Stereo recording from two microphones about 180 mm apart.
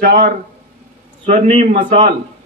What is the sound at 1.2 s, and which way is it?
Speech, 40° right (ahead or behind).